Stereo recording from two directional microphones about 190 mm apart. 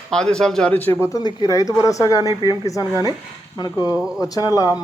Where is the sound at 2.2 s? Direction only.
20° right (ahead or behind).